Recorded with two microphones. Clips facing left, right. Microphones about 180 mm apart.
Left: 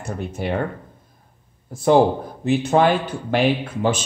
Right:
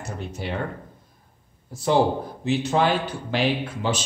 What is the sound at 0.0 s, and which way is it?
Speech, 55° left (ahead or behind).